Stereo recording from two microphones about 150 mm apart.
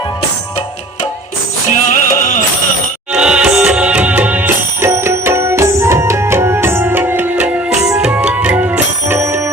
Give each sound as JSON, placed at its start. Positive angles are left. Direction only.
{"t": 1.7, "sound": "music", "side_deg": 55}
{"t": 3.1, "sound": "music", "side_deg": -5}